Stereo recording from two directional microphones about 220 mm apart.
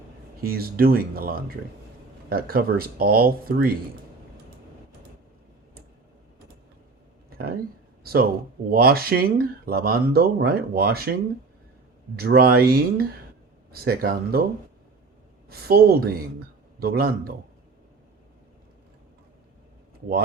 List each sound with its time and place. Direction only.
0.4 s speech: 45° right (ahead or behind)
7.3 s a sound: 45° right (ahead or behind)
8.0 s speech: 45° right (ahead or behind)
12.1 s speech: 45° right (ahead or behind)
15.4 s speech: 45° right (ahead or behind)